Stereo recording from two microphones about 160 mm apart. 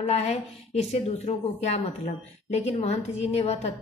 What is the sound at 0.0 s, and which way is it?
A woman's voice, 40° left (ahead or behind).